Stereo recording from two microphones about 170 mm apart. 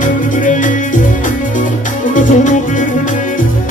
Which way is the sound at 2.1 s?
50° left (ahead or behind).